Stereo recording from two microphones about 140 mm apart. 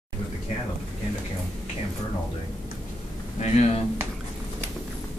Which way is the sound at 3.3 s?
55° left (ahead or behind).